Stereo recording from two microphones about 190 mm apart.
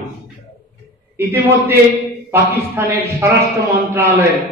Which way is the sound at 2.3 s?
15° right (ahead or behind).